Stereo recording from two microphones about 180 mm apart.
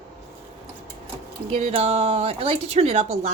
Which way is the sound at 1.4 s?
30° right (ahead or behind).